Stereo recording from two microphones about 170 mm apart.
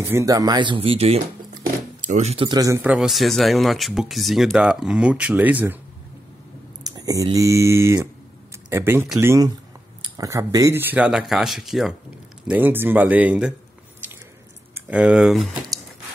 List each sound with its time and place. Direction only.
0.0 s speech: 20° right (ahead or behind)
6.8 s speech: 20° right (ahead or behind)
14.7 s speech: 5° right (ahead or behind)